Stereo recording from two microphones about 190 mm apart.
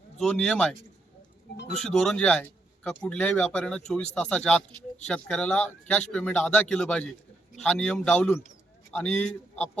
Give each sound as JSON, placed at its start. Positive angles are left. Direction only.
{"t": 0.2, "sound": "speech", "side_deg": 5}